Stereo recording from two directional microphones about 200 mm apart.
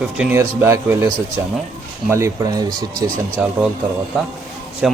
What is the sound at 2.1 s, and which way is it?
A man's voice, 15° right (ahead or behind).